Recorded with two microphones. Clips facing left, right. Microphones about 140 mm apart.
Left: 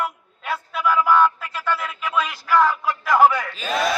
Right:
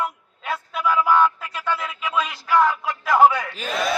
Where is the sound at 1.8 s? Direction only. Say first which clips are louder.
Left 1 dB; centre (ahead or behind).